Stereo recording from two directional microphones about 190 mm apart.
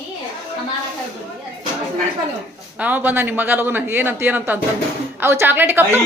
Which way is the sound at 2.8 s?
10° right (ahead or behind).